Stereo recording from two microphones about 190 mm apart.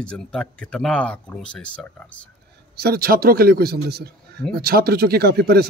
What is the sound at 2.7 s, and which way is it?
Speech, 55° right (ahead or behind).